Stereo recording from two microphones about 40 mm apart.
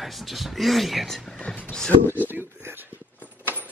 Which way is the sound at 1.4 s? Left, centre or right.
Left.